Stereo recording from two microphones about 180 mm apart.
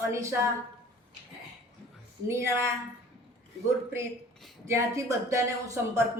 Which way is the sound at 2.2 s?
15° right (ahead or behind).